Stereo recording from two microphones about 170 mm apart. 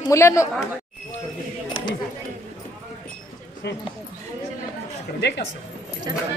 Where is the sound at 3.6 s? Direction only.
80° left.